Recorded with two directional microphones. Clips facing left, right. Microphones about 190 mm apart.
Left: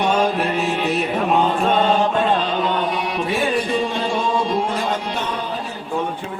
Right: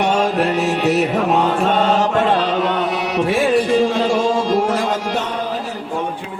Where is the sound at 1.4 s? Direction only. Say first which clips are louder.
Right 1 dB; 80° right.